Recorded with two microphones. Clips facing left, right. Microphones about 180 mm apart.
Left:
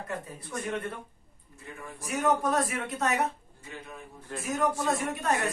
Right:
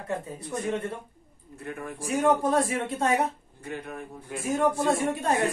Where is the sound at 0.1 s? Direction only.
25° right (ahead or behind).